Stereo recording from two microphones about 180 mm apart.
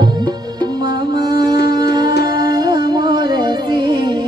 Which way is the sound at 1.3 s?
20° right (ahead or behind).